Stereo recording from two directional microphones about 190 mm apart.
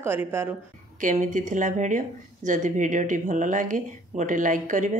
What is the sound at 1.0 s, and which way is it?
A woman's voice, 40° right (ahead or behind).